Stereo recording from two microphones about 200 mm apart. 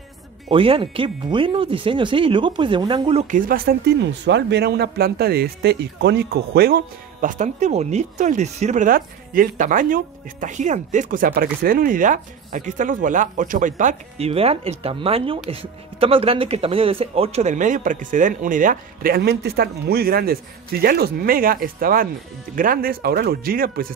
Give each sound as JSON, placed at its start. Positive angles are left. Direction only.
{"t": 0.5, "sound": "speech", "side_deg": -25}